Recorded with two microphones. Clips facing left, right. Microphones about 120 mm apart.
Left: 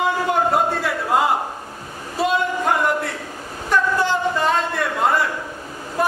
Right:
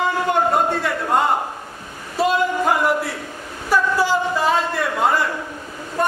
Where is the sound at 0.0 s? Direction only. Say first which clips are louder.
Even; centre (ahead or behind).